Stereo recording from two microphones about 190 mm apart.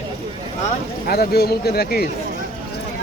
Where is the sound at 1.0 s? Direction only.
55° left (ahead or behind).